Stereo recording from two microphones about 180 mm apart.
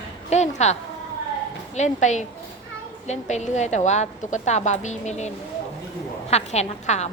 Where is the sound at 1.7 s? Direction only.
40° left (ahead or behind).